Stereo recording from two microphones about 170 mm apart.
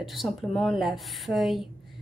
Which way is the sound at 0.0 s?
Centre (ahead or behind).